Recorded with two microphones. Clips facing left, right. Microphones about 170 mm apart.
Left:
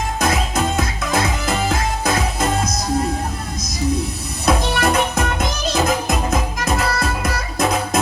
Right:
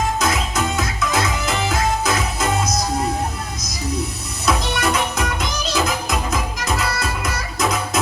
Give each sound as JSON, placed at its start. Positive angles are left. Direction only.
{"t": 0.2, "sound": "music", "side_deg": 55}
{"t": 4.4, "sound": "music", "side_deg": 55}